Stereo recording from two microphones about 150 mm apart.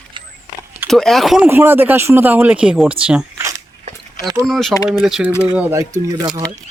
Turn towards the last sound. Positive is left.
turn(degrees=-20)  # may be behind; listen again after turning